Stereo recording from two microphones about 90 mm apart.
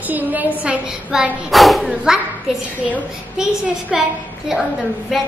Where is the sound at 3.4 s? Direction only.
10° right (ahead or behind).